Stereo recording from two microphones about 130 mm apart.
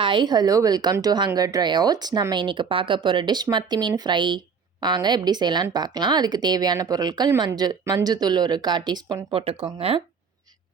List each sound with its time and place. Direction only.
0.0 s speech: 35° right (ahead or behind)
9.6 s speech: 45° right (ahead or behind)